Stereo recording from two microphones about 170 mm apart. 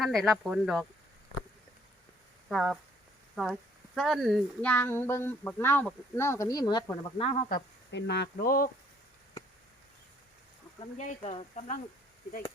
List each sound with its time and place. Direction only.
0.0 s speech: centre (ahead or behind)
2.5 s speech: centre (ahead or behind); by 6.8 s 25° left (ahead or behind)
7.2 s speech: 35° left (ahead or behind)
7.5 s speech: 90° left; by 8.7 s 55° left (ahead or behind)
10.9 s speech: 45° left (ahead or behind)